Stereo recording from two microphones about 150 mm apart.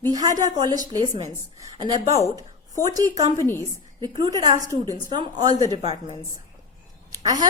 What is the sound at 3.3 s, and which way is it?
Speech, 15° left (ahead or behind).